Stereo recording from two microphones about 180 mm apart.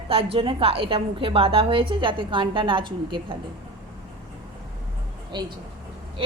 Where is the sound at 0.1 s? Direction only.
30° right (ahead or behind).